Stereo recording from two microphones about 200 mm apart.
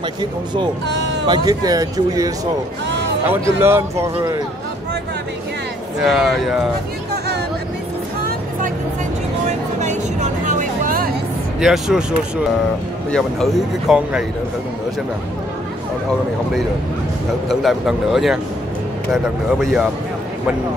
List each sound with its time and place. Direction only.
1.2 s speech: 20° right (ahead or behind)
5.9 s speech: centre (ahead or behind)
9.5 s vehicle: 35° right (ahead or behind)
11.6 s speech: centre (ahead or behind)
13.1 s speech: centre (ahead or behind)
17.5 s speech: centre (ahead or behind)